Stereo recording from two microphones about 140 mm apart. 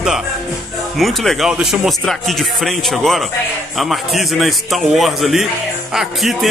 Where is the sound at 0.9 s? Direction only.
Centre (ahead or behind).